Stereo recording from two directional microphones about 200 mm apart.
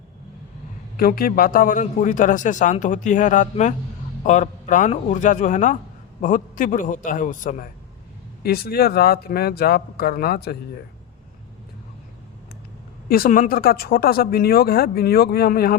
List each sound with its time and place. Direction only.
0.9 s a man's voice: 45° left (ahead or behind)
13.1 s speech: 45° left (ahead or behind)